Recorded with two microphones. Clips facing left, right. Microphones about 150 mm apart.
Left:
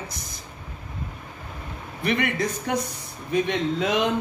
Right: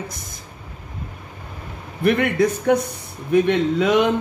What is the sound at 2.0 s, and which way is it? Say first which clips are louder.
A man's voice: right 7 dB; 55° right (ahead or behind).